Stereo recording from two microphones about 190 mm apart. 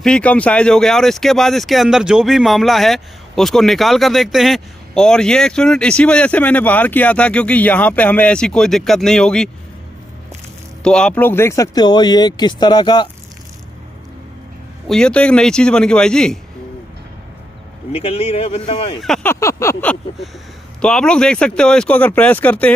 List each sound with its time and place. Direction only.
0.0 s speech: 5° left (ahead or behind)
10.8 s speech: 5° left (ahead or behind); by 13.1 s 25° left (ahead or behind)
14.9 s speech: 5° left (ahead or behind)
17.9 s speech: 30° left (ahead or behind)
18.9 s speech: 5° left (ahead or behind)
19.4 s a sound: 15° left (ahead or behind)
20.8 s speech: 5° left (ahead or behind)